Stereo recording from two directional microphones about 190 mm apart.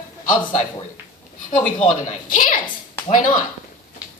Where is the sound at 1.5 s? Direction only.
35° left (ahead or behind).